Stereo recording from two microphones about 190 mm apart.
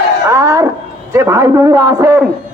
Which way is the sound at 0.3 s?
15° right (ahead or behind).